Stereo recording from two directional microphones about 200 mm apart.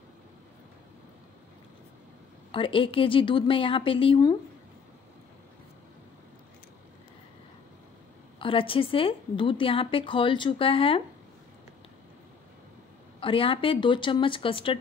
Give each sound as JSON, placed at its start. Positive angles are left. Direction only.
{"t": 2.5, "sound": "a woman's voice", "side_deg": 25}
{"t": 8.4, "sound": "a woman's voice", "side_deg": 25}
{"t": 13.2, "sound": "a woman's voice", "side_deg": 25}